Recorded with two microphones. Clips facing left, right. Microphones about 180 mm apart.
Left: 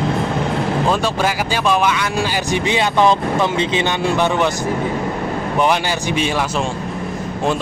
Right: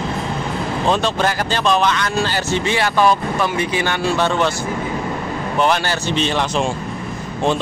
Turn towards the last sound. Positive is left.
turn(degrees=10)  # may be behind; listen again after turning